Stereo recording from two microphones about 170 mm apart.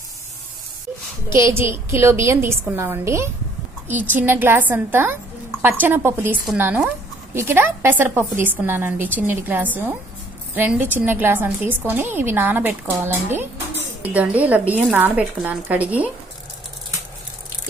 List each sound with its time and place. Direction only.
1.3 s a woman's voice: 15° right (ahead or behind)